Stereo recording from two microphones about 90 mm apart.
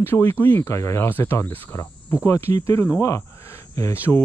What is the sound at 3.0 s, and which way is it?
Cricket, 35° left (ahead or behind).